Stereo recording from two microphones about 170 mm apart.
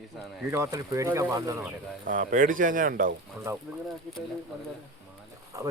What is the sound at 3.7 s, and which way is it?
Speech, 15° right (ahead or behind).